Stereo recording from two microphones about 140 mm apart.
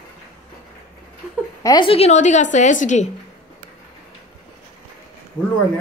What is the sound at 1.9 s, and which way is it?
A woman's voice, 50° left (ahead or behind).